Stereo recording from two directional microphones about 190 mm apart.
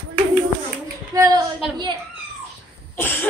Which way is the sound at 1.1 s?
20° right (ahead or behind).